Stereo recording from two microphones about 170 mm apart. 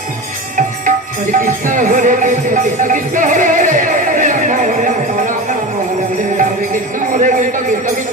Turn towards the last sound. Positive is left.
turn(degrees=-50)  # may be behind; listen again after turning